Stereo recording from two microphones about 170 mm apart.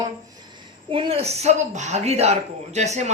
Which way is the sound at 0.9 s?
30° right (ahead or behind).